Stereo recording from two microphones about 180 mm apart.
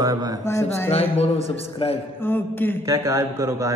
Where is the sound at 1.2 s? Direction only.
35° left (ahead or behind).